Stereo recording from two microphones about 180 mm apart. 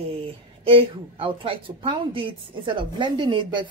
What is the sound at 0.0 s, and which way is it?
Speech, 30° right (ahead or behind).